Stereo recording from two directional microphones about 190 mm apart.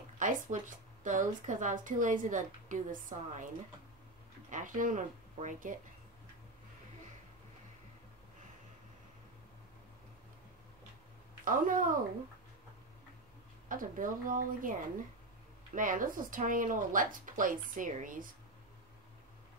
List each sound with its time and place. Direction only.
0.2 s a woman's voice: 45° right (ahead or behind)
4.5 s a woman's voice: 45° right (ahead or behind)
11.4 s a woman's voice: 45° right (ahead or behind)
13.7 s a woman's voice: 45° right (ahead or behind)